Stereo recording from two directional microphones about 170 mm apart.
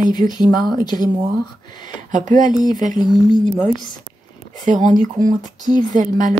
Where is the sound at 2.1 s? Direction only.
45° right (ahead or behind).